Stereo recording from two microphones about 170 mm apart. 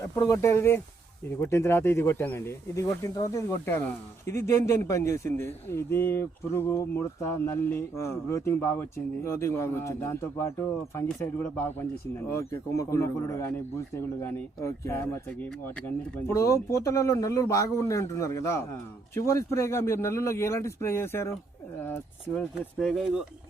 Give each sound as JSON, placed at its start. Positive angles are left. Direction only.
{"t": 0.0, "sound": "speech", "side_deg": 20}